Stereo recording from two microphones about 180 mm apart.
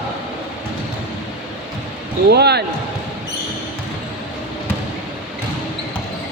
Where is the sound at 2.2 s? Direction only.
65° right (ahead or behind).